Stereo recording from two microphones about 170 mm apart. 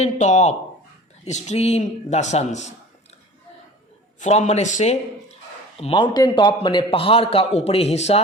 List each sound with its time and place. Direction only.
0.0 s a man's voice: 45° left (ahead or behind)
4.2 s a man's voice: 40° left (ahead or behind)
5.8 s a man's voice: 30° left (ahead or behind)